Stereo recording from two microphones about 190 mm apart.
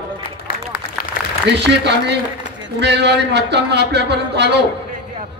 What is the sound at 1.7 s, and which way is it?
A man's voice, 65° right (ahead or behind).